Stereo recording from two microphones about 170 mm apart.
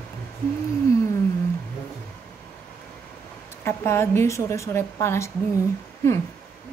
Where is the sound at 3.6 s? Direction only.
15° left (ahead or behind).